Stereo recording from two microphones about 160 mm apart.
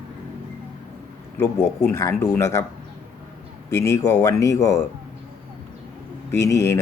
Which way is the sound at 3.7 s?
20° left (ahead or behind).